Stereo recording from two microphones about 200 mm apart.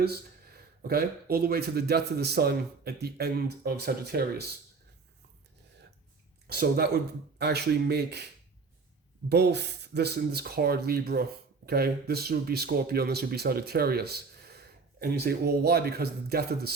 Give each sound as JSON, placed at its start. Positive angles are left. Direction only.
{"t": 0.0, "sound": "speech", "side_deg": -50}
{"t": 6.5, "sound": "speech", "side_deg": -50}
{"t": 9.3, "sound": "speech", "side_deg": -55}